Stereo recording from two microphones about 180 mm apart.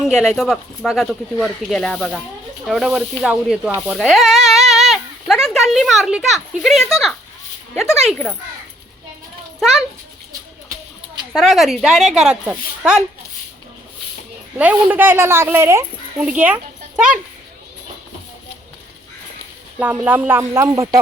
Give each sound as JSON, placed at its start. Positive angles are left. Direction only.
{"t": 0.2, "sound": "speech", "side_deg": 0}
{"t": 10.7, "sound": "a sound", "side_deg": -25}
{"t": 11.3, "sound": "speech", "side_deg": 0}
{"t": 14.6, "sound": "a woman's voice", "side_deg": -10}
{"t": 19.8, "sound": "a woman's voice", "side_deg": -10}